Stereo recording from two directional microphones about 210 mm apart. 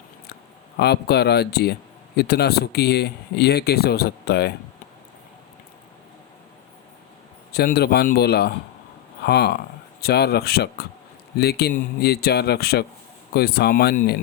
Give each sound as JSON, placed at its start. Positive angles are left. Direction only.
{"t": 0.8, "sound": "a man's voice", "side_deg": 50}
{"t": 7.5, "sound": "a man's voice", "side_deg": 50}